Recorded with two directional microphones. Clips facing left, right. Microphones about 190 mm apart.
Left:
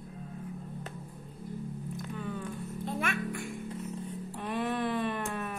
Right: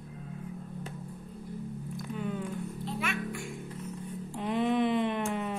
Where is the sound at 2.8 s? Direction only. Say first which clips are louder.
Left 3 dB; 50° left (ahead or behind).